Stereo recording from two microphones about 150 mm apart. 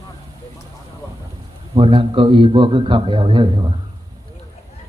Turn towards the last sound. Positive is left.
turn(degrees=-35)  # may be behind; listen again after turning